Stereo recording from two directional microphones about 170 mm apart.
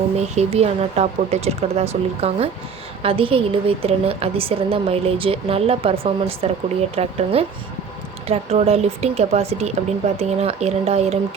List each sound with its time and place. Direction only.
0.2 s a woman's voice: 40° right (ahead or behind)